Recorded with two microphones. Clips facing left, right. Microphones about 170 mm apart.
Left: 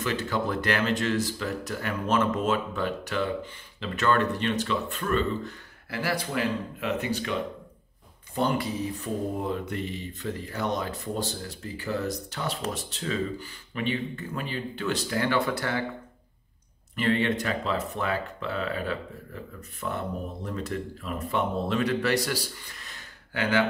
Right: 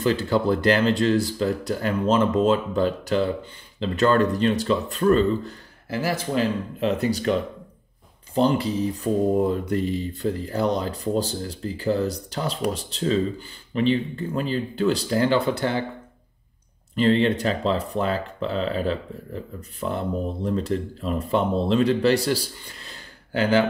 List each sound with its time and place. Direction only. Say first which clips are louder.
0.0 s speech: right 7 dB; 30° right (ahead or behind)
7.0 s speech: right 7 dB; 40° right (ahead or behind)
8.4 s speech: right 6 dB; 30° right (ahead or behind)
16.9 s speech: right 6 dB; 30° right (ahead or behind)